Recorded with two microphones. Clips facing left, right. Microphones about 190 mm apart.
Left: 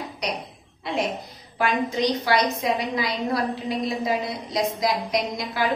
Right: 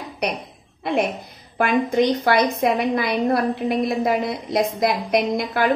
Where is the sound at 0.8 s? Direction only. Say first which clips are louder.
Right 5 dB; 55° right (ahead or behind).